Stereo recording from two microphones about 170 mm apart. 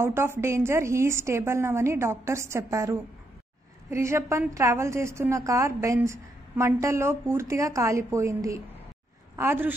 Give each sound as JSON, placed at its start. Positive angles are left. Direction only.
{"t": 0.0, "sound": "a woman's voice", "side_deg": -15}